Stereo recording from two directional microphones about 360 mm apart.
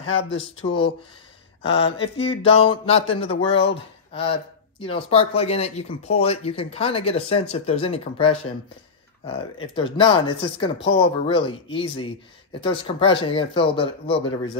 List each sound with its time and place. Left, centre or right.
0.0 s speech: centre
9.8 s speech: centre